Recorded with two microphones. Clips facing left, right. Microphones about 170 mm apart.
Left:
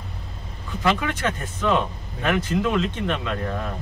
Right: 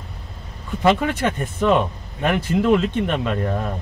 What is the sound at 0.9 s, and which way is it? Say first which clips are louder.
Speech: right 4 dB; 55° right (ahead or behind).